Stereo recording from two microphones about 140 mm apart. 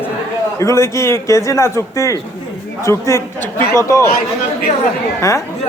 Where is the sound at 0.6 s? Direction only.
20° left (ahead or behind).